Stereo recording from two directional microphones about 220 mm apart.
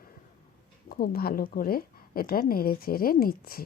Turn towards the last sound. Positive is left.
turn(degrees=40)  # may be behind; listen again after turning